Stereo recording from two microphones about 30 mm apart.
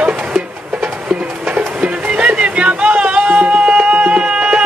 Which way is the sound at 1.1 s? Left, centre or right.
Right.